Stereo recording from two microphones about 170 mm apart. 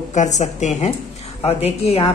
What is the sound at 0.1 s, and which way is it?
A woman's voice, 45° left (ahead or behind).